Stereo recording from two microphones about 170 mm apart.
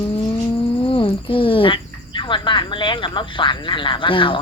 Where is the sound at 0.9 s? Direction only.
30° left (ahead or behind).